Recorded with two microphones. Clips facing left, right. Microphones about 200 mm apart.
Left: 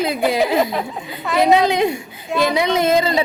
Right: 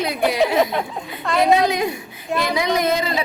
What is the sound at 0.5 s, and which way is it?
Speech, centre (ahead or behind).